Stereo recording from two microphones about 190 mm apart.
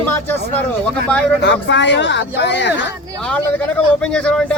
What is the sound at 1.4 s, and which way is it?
Speech, 70° left (ahead or behind).